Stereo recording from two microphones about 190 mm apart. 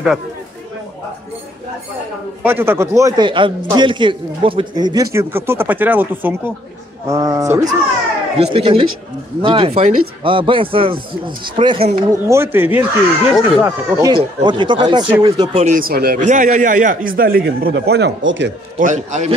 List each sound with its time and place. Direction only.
2.4 s a man's voice: 10° right (ahead or behind)
8.4 s speech: 30° right (ahead or behind)
12.1 s a man's voice: 15° right (ahead or behind)
14.1 s speech: 25° right (ahead or behind)
15.6 s a man's voice: 45° right (ahead or behind); by 18.5 s 75° right (ahead or behind)
18.8 s a man's voice: 40° right (ahead or behind)